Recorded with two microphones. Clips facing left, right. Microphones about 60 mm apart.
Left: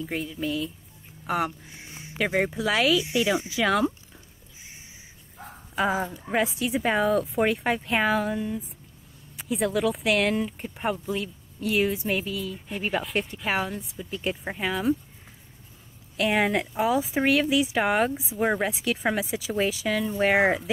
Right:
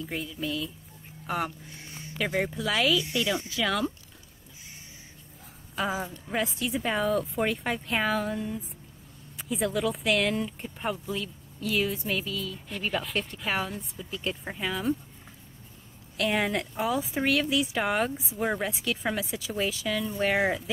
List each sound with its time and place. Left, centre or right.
0.0 s speech: centre
1.8 s a sound: centre
2.6 s speech: centre
5.8 s speech: centre
14.7 s speech: centre
16.2 s speech: centre
20.3 s speech: left